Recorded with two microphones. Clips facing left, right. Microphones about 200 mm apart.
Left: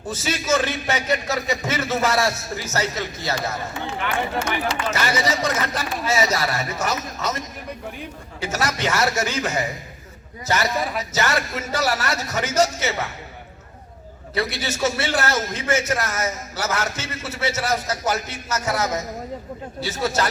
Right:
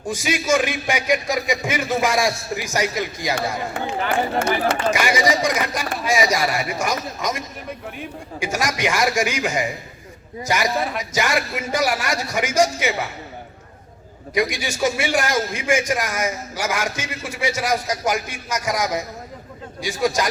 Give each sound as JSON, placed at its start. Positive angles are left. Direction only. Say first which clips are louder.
{"t": 0.0, "sound": "a man's voice", "louder": "right 3 dB", "side_deg": -10}
{"t": 4.4, "sound": "speech", "louder": "right 4 dB", "side_deg": -40}
{"t": 4.9, "sound": "a man's voice", "louder": "right 3 dB", "side_deg": -10}
{"t": 14.3, "sound": "a man's voice", "louder": "right 3 dB", "side_deg": -10}